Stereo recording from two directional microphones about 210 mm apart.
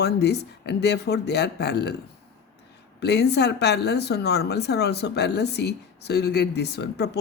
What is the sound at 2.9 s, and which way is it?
Speech, 50° left (ahead or behind).